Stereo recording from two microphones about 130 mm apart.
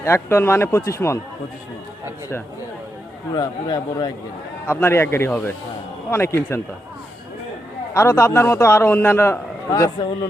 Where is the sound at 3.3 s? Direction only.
30° left (ahead or behind).